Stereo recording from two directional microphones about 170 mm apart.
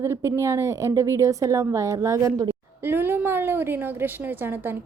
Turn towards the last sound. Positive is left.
turn(degrees=-10)  # may be behind; listen again after turning